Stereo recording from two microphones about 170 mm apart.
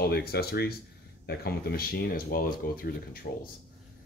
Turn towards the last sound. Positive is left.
turn(degrees=60)  # may be behind; listen again after turning